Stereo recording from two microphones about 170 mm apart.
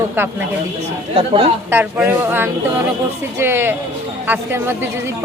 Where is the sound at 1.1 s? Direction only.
30° right (ahead or behind).